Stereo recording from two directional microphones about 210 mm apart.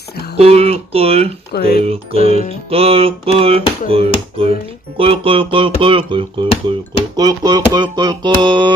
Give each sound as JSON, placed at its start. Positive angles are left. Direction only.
{"t": 0.3, "sound": "speech", "side_deg": -30}
{"t": 1.8, "sound": "music", "side_deg": -30}